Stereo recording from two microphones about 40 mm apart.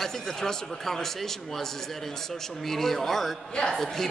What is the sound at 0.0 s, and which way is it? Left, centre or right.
A woman's voice, centre.